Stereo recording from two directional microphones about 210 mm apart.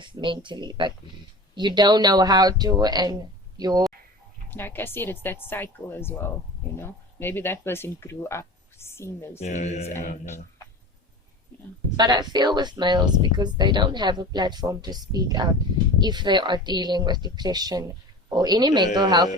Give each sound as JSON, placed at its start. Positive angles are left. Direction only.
{"t": 0.0, "sound": "speech", "side_deg": -25}
{"t": 4.5, "sound": "a woman's voice", "side_deg": 10}
{"t": 9.4, "sound": "speech", "side_deg": 35}
{"t": 11.9, "sound": "speech", "side_deg": -20}